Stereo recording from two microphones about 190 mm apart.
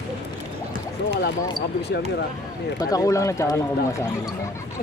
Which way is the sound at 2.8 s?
20° left (ahead or behind).